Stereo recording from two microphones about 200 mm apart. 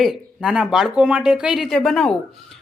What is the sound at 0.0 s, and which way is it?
A woman's voice, centre (ahead or behind).